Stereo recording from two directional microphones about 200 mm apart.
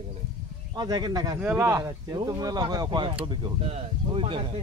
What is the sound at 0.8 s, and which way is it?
Speech, 20° right (ahead or behind).